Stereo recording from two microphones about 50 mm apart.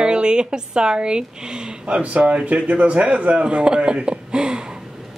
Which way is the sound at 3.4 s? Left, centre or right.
Centre.